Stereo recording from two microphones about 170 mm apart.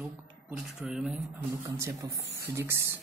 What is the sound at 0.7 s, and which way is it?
Speech, 5° right (ahead or behind).